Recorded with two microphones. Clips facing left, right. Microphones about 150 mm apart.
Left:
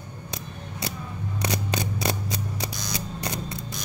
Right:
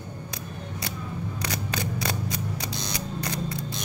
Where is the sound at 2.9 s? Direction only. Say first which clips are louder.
Even; 20° left (ahead or behind).